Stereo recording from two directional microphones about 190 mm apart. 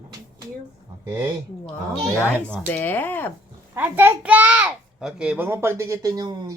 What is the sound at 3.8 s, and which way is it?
A child's voice, 10° right (ahead or behind).